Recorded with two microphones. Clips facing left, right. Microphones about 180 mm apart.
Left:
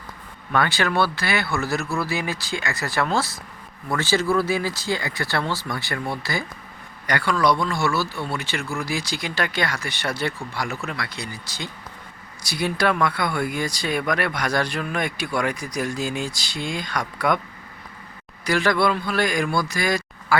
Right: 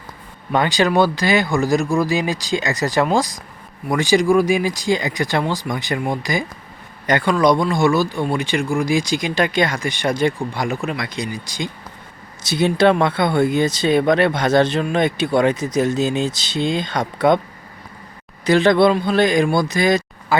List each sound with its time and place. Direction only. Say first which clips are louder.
0.5 s speech: right 5 dB; 20° right (ahead or behind)
18.4 s speech: right 7 dB; 20° right (ahead or behind)